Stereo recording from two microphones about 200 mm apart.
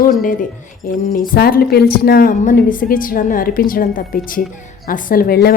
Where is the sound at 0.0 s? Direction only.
45° left (ahead or behind).